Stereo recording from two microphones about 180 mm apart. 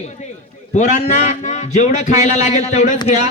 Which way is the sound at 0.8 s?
40° left (ahead or behind).